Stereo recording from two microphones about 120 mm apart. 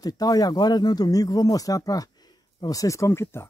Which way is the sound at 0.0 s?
30° left (ahead or behind).